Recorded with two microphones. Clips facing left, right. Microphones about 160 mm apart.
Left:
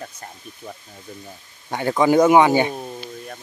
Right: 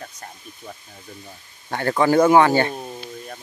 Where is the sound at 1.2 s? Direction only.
15° left (ahead or behind).